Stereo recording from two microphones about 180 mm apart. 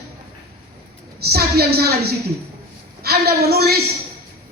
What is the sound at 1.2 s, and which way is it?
A woman's voice, 60° right (ahead or behind).